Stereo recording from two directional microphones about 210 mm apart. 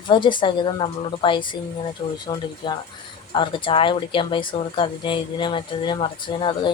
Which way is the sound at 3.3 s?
25° left (ahead or behind).